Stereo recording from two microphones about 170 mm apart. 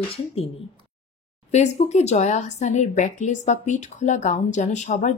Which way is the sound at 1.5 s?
40° left (ahead or behind).